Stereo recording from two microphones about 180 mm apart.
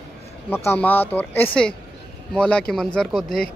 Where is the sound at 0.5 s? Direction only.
10° left (ahead or behind).